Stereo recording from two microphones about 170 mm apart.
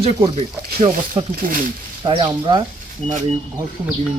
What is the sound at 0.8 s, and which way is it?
Speech, 50° right (ahead or behind).